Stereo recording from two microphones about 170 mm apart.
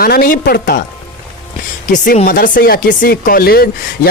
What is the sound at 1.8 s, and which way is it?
Speech, 45° left (ahead or behind).